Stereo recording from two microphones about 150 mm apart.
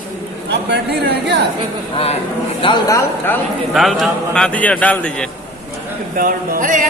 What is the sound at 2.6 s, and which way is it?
Speech, 25° left (ahead or behind).